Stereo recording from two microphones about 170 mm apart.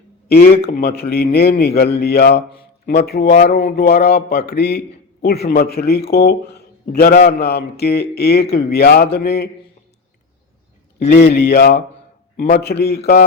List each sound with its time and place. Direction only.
0.3 s speech: 65° left (ahead or behind)
11.1 s speech: 70° left (ahead or behind)